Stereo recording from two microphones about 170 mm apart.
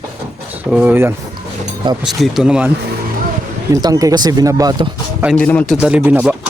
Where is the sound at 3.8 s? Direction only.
20° right (ahead or behind).